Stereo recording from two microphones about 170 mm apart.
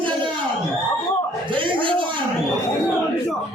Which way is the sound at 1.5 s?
30° right (ahead or behind).